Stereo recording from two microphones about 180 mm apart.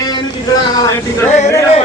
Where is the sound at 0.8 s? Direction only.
20° left (ahead or behind).